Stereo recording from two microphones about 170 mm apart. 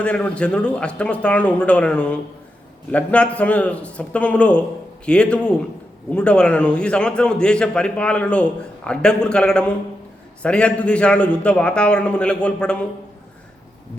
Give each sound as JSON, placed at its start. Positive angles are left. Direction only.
{"t": 0.0, "sound": "a man's voice", "side_deg": 5}